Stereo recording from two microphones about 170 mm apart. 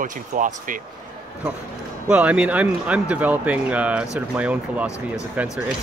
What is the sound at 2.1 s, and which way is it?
Speech, 5° right (ahead or behind).